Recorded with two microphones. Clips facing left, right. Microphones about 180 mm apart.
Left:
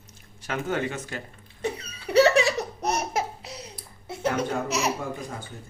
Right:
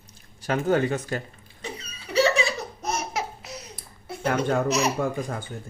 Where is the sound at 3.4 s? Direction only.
30° left (ahead or behind).